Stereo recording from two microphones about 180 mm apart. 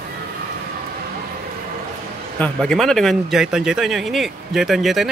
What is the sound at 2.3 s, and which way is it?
Speech, 5° left (ahead or behind).